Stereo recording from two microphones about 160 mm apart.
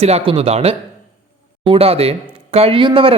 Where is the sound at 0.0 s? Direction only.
35° right (ahead or behind).